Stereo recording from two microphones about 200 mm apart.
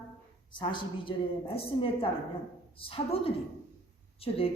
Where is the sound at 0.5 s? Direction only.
25° left (ahead or behind).